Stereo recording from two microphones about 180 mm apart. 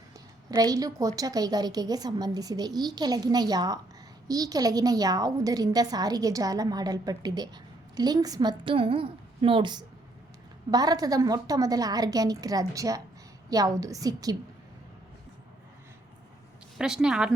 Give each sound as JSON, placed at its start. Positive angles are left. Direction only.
{"t": 0.5, "sound": "a woman's voice", "side_deg": -20}
{"t": 16.7, "sound": "a woman's voice", "side_deg": -5}